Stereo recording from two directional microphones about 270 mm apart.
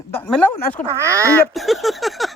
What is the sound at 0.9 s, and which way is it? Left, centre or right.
Speech, centre.